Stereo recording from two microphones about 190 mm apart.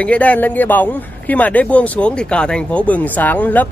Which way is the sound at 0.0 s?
5° left (ahead or behind).